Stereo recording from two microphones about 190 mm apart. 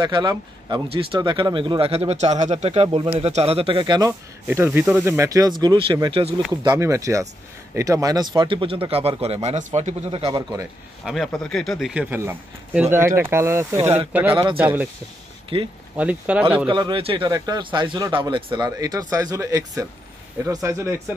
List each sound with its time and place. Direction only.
0.0 s speech: 20° right (ahead or behind)
4.5 s speech: 10° right (ahead or behind); by 10.4 s 30° right (ahead or behind)
11.1 s speech: centre (ahead or behind)
14.3 s speech: 25° right (ahead or behind)
14.6 s speech: 10° right (ahead or behind)
16.0 s speech: 5° right (ahead or behind)
16.6 s speech: 25° right (ahead or behind)